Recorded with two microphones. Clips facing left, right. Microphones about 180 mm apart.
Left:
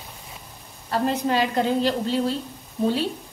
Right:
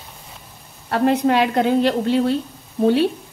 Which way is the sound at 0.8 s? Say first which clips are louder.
Right 6 dB; 65° right (ahead or behind).